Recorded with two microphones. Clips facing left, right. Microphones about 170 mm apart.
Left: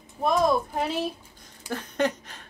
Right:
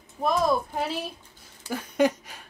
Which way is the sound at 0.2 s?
Centre (ahead or behind).